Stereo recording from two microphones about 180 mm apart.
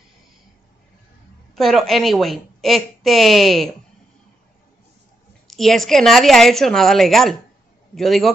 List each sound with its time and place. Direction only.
1.5 s a woman's voice: centre (ahead or behind)
5.5 s a woman's voice: centre (ahead or behind)